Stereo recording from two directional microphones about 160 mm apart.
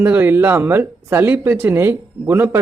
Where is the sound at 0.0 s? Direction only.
10° right (ahead or behind).